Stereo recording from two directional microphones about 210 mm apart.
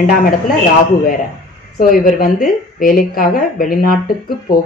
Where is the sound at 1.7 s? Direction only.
45° left (ahead or behind).